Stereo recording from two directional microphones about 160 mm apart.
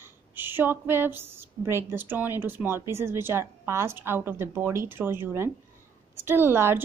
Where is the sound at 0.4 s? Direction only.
10° right (ahead or behind).